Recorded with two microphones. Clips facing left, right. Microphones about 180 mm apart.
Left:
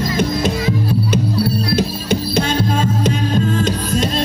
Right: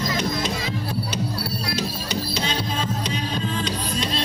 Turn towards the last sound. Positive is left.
turn(degrees=45)  # may be behind; listen again after turning